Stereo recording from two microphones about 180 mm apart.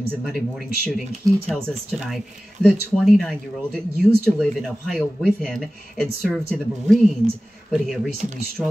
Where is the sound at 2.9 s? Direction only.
Centre (ahead or behind).